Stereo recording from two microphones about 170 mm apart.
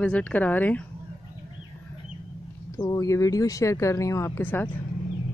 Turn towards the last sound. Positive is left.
turn(degrees=10)  # may be behind; listen again after turning